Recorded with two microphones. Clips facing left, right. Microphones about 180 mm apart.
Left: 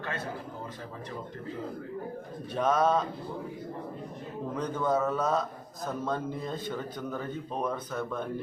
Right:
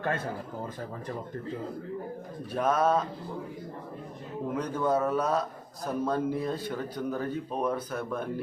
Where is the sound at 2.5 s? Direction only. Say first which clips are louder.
Even; 10° right (ahead or behind).